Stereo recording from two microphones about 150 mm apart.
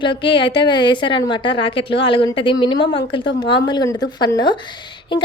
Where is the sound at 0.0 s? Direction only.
35° left (ahead or behind).